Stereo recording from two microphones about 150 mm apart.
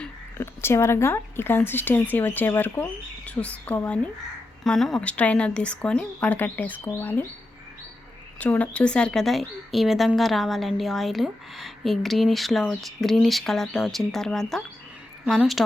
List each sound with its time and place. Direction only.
0.0 s speech: 15° left (ahead or behind)
8.4 s a woman's voice: 10° left (ahead or behind)